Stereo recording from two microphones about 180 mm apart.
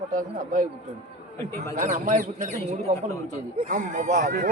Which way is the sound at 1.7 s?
45° right (ahead or behind).